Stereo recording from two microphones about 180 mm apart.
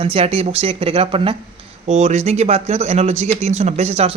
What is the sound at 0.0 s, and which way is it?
Speech, 30° right (ahead or behind).